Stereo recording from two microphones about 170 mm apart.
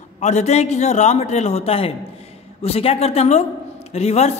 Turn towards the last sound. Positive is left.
turn(degrees=40)  # may be behind; listen again after turning